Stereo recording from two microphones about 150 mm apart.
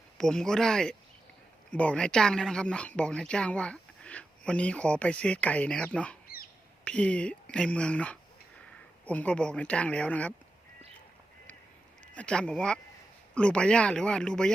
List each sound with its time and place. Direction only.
0.2 s speech: 5° left (ahead or behind)
6.2 s bird: 80° left
6.8 s speech: 10° left (ahead or behind)
12.1 s speech: 5° left (ahead or behind)